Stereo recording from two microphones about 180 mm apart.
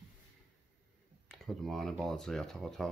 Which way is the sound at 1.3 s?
Centre (ahead or behind).